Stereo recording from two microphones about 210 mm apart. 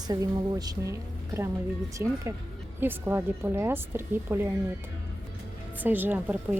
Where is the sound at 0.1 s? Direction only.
15° right (ahead or behind).